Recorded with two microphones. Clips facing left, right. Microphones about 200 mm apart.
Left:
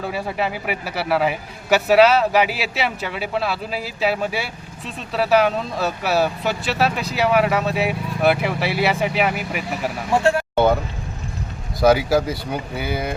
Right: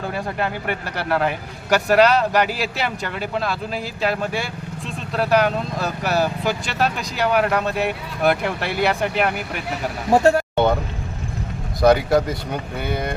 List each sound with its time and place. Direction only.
0.0 s speech: 5° left (ahead or behind)
10.1 s speech: 40° right (ahead or behind)
10.5 s vehicle: 5° left (ahead or behind)
11.8 s speech: 5° left (ahead or behind)